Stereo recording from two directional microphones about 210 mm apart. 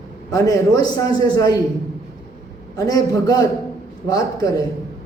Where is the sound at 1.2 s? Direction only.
20° left (ahead or behind).